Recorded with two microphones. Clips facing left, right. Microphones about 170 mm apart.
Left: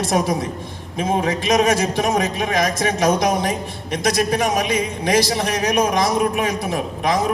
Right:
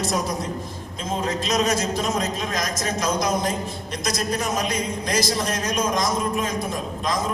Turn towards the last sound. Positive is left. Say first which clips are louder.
# left 6 dB
turn(degrees=65)  # may be behind; listen again after turning